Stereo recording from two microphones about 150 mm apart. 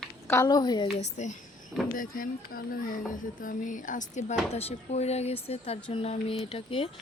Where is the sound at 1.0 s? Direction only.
50° left (ahead or behind).